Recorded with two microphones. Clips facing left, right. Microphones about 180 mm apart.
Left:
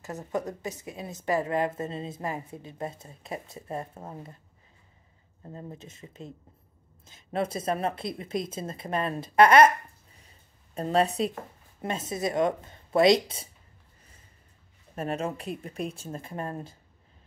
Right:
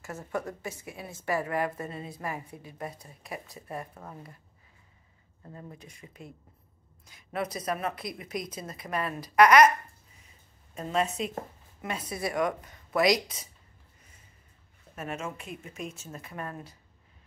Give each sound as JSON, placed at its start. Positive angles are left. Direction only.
{"t": 0.0, "sound": "a woman's voice", "side_deg": 20}
{"t": 5.4, "sound": "a woman's voice", "side_deg": 25}
{"t": 10.1, "sound": "a sound", "side_deg": 35}
{"t": 11.8, "sound": "a woman's voice", "side_deg": 25}
{"t": 15.0, "sound": "speech", "side_deg": 35}